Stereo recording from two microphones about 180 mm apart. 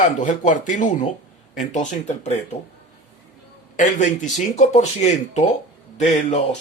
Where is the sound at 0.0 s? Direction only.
45° left (ahead or behind).